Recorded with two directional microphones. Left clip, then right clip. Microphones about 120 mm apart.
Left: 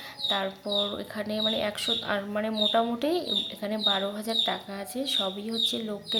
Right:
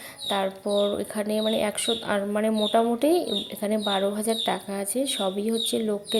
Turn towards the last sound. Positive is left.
turn(degrees=-40)  # may be behind; listen again after turning